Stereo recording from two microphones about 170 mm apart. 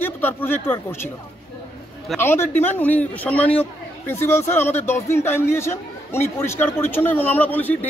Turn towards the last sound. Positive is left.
turn(degrees=10)  # may be behind; listen again after turning